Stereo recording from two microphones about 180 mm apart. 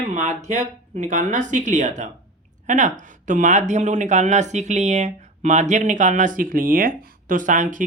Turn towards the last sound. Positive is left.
turn(degrees=-45)  # may be behind; listen again after turning